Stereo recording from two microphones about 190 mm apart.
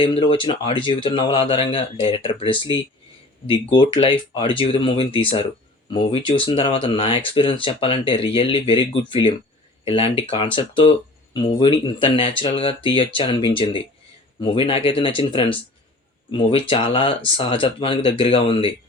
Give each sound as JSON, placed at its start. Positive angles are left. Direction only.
{"t": 0.0, "sound": "speech", "side_deg": 30}